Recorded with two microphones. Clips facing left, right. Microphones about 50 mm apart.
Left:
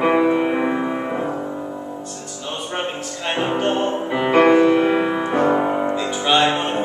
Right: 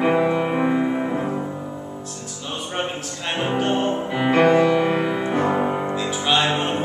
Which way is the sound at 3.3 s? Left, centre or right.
Centre.